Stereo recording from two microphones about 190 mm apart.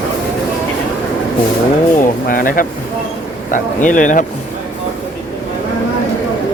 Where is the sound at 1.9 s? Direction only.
45° left (ahead or behind).